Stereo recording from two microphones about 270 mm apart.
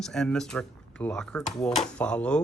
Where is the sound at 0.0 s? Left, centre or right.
Centre.